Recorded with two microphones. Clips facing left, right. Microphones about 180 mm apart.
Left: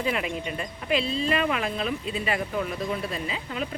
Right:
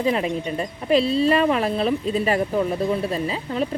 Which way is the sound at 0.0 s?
35° right (ahead or behind).